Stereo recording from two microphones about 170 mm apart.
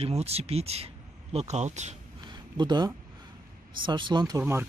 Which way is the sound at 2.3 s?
25° right (ahead or behind).